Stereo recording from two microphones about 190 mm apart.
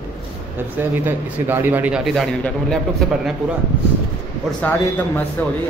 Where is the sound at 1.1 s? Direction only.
10° right (ahead or behind).